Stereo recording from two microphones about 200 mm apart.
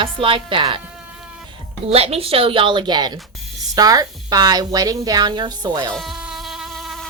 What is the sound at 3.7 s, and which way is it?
Speech, 20° right (ahead or behind).